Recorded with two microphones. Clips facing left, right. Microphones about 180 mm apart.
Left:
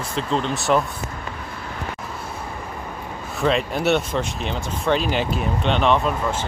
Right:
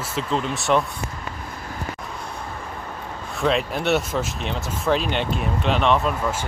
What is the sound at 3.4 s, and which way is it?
Speech, centre (ahead or behind).